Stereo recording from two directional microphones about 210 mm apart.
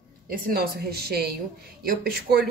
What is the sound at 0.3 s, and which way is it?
Speech, 45° right (ahead or behind).